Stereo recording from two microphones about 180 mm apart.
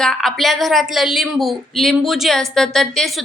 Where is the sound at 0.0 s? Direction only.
Centre (ahead or behind).